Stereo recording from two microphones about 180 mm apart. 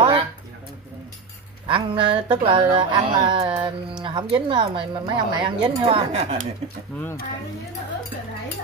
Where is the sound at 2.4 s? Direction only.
30° right (ahead or behind).